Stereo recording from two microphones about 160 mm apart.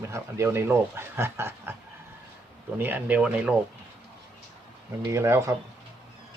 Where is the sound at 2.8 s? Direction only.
10° right (ahead or behind).